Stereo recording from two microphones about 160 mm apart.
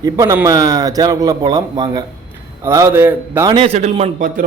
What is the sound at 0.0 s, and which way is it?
A man's voice, 20° right (ahead or behind).